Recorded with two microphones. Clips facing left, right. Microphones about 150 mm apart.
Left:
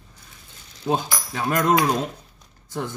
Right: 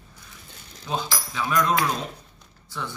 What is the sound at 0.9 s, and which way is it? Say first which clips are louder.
Speech: left 5 dB; 55° left (ahead or behind).